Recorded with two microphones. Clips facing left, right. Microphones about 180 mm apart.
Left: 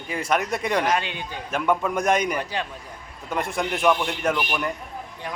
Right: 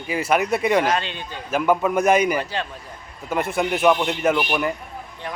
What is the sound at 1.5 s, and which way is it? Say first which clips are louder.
A man's voice: right 4 dB; 5° right (ahead or behind).